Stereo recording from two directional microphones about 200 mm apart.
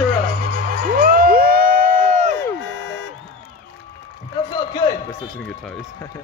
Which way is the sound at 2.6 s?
65° left (ahead or behind).